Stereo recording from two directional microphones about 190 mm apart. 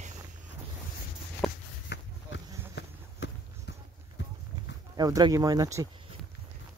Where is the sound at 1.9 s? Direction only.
60° left (ahead or behind).